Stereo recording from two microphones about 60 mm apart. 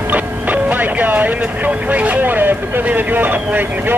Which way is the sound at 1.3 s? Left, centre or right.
Right.